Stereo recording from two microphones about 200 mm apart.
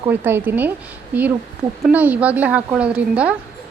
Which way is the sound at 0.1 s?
10° right (ahead or behind).